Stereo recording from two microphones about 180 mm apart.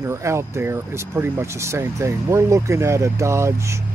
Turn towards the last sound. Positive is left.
turn(degrees=-15)  # may be behind; listen again after turning